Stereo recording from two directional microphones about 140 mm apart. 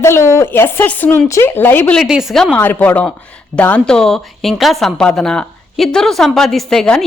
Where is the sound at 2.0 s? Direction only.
5° right (ahead or behind).